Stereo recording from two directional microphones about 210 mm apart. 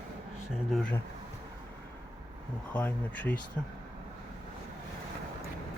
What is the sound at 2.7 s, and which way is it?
Speech, 10° left (ahead or behind).